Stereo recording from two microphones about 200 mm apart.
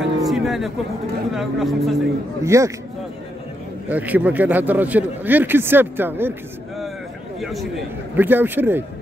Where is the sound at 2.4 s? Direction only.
15° right (ahead or behind).